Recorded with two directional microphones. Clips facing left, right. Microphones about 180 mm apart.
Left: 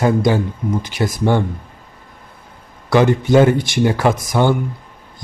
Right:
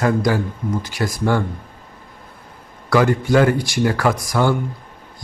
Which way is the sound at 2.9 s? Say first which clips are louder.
Left 3 dB; 20° left (ahead or behind).